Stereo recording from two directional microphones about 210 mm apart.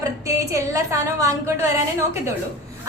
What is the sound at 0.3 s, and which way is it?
A woman's voice, 15° right (ahead or behind).